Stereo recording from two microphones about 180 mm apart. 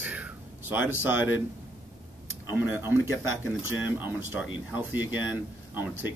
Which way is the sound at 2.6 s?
10° right (ahead or behind).